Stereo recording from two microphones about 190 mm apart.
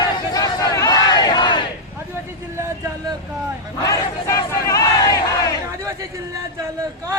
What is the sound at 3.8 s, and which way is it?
Crowd, 20° left (ahead or behind).